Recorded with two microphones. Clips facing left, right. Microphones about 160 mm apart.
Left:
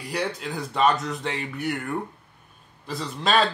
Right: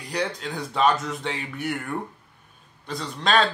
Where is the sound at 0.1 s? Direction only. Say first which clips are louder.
Even; 5° left (ahead or behind).